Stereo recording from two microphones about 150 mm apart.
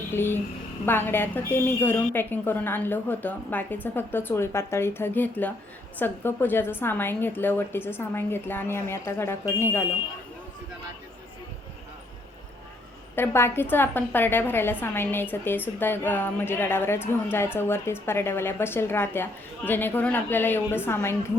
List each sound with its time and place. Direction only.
0.1 s a woman's voice: 15° left (ahead or behind)
13.1 s a woman's voice: 15° left (ahead or behind)